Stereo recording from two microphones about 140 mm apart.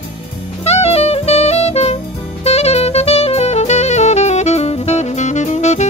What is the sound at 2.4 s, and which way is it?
Saxophone, 50° left (ahead or behind).